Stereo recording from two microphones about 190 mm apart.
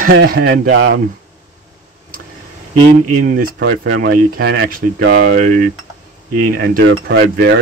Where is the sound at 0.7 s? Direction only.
80° right.